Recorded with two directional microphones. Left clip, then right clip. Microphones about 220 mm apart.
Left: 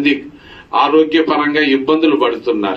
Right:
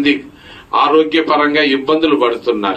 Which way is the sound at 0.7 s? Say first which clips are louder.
Even; 25° left (ahead or behind).